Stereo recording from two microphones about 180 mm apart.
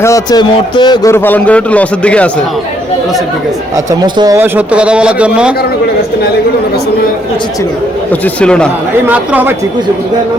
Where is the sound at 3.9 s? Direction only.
25° right (ahead or behind).